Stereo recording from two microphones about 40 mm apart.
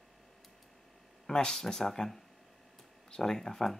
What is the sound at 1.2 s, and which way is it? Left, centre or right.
Speech, centre.